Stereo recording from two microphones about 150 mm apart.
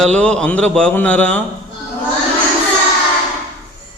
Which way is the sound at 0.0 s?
5° left (ahead or behind).